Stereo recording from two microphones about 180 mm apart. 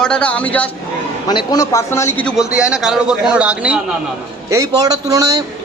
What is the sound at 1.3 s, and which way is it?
A man's voice, 20° left (ahead or behind).